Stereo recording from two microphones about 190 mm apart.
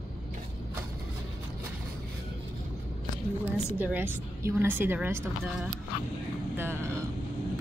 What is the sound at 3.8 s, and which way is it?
A woman's voice, 10° right (ahead or behind).